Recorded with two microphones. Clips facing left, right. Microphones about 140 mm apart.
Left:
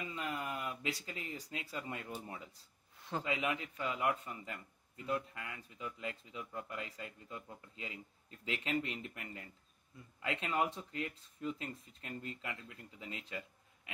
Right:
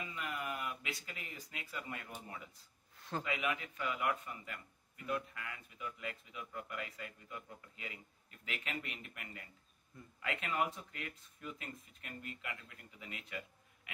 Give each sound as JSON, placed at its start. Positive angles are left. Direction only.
{"t": 0.0, "sound": "a man's voice", "side_deg": 30}